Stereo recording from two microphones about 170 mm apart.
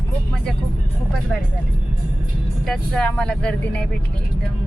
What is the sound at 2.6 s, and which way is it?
Speech, 5° left (ahead or behind).